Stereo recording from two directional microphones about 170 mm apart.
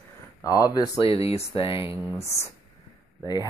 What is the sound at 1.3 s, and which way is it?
Speech, 35° left (ahead or behind).